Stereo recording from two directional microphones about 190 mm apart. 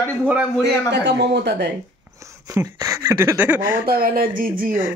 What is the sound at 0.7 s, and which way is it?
Speech, 65° right (ahead or behind).